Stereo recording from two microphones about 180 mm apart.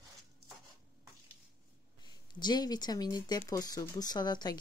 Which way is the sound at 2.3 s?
25° left (ahead or behind).